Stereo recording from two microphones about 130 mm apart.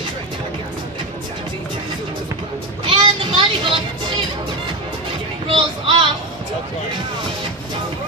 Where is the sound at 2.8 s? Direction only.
45° right (ahead or behind).